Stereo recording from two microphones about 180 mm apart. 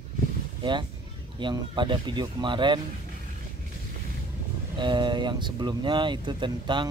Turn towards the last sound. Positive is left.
turn(degrees=-25)  # may be behind; listen again after turning